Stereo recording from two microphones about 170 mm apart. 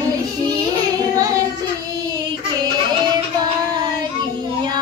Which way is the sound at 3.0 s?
25° right (ahead or behind).